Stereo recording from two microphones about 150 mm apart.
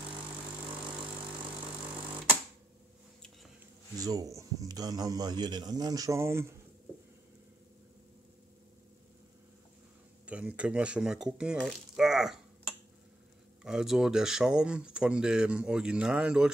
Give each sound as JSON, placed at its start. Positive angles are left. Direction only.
{"t": 4.0, "sound": "speech", "side_deg": -25}
{"t": 10.2, "sound": "speech", "side_deg": -10}
{"t": 13.7, "sound": "speech", "side_deg": -5}